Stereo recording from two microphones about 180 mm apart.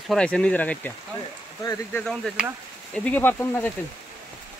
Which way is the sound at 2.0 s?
Centre (ahead or behind).